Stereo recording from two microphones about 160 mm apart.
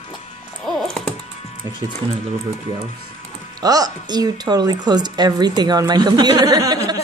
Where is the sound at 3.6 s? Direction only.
25° right (ahead or behind).